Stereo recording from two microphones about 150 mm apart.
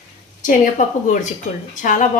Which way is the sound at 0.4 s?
60° left (ahead or behind).